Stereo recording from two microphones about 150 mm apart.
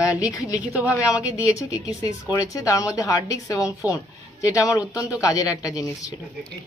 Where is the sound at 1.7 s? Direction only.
25° left (ahead or behind).